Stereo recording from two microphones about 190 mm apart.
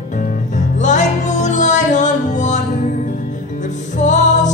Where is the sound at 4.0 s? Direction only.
40° left (ahead or behind).